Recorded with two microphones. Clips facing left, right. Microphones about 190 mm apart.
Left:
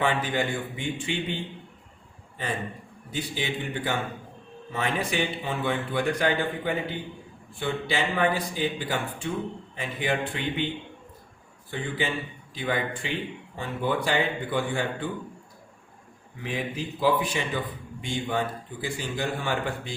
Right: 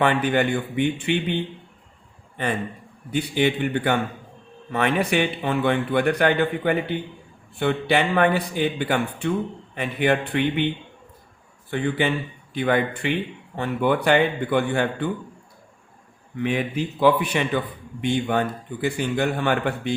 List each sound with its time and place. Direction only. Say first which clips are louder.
0.0 s a man's voice: right 6 dB; 65° right (ahead or behind)
3.1 s a man's voice: right 9 dB; 60° right (ahead or behind)
11.7 s a man's voice: right 7 dB; 65° right (ahead or behind)
16.4 s a man's voice: right 7 dB; 65° right (ahead or behind)